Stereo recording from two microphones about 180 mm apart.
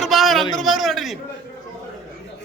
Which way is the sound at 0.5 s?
Centre (ahead or behind).